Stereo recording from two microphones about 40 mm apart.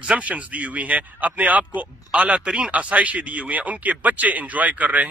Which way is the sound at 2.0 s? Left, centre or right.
Right.